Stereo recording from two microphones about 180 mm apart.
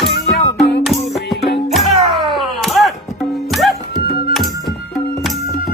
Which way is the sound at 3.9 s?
60° left (ahead or behind).